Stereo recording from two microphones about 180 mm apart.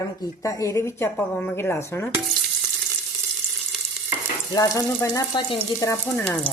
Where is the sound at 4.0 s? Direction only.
5° right (ahead or behind).